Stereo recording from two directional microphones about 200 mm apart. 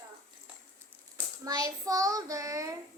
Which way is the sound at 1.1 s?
15° right (ahead or behind).